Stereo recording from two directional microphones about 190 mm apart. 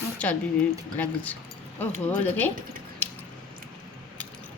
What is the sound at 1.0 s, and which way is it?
Speech, 10° left (ahead or behind).